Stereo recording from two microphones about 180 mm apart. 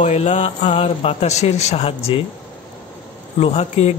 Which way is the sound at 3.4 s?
35° left (ahead or behind).